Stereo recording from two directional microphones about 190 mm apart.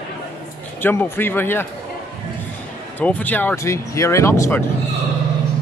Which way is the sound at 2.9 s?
10° left (ahead or behind).